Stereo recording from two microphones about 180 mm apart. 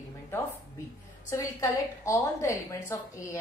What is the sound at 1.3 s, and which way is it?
A woman's voice, 15° left (ahead or behind).